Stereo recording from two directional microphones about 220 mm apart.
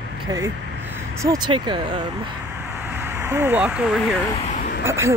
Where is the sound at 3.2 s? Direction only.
10° right (ahead or behind).